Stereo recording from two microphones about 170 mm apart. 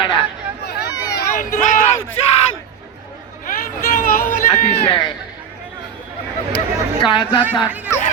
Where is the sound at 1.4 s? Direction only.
55° left (ahead or behind).